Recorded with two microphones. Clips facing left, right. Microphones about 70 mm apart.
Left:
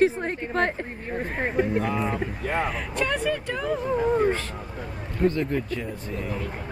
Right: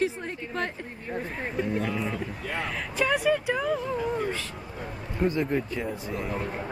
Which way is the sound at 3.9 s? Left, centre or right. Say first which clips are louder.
Left 7 dB; left.